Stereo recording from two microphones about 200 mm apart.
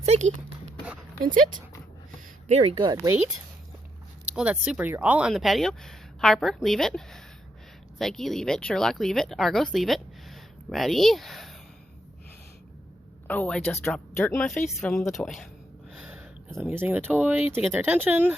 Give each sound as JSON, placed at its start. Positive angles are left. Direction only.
{"t": 0.0, "sound": "speech", "side_deg": -35}
{"t": 2.5, "sound": "speech", "side_deg": -30}
{"t": 4.3, "sound": "speech", "side_deg": -5}
{"t": 13.2, "sound": "a woman's voice", "side_deg": 10}
{"t": 15.9, "sound": "a sound", "side_deg": -5}
{"t": 17.5, "sound": "speech", "side_deg": -10}